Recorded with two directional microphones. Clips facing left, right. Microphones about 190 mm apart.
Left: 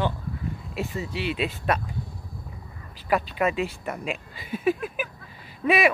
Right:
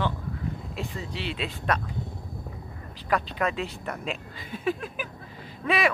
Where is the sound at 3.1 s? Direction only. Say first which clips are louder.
Left 3 dB; 10° left (ahead or behind).